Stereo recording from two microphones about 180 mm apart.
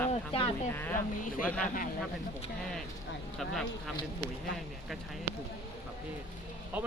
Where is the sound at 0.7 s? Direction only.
10° left (ahead or behind).